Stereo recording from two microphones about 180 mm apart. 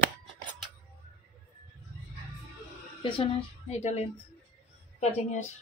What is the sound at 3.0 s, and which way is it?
A woman's voice, 25° left (ahead or behind).